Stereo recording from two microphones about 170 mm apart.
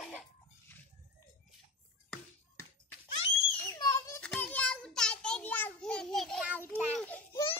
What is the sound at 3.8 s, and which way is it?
Children playing, 20° left (ahead or behind).